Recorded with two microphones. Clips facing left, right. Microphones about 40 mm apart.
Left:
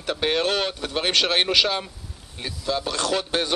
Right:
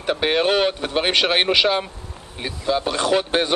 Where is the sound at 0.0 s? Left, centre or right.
Centre.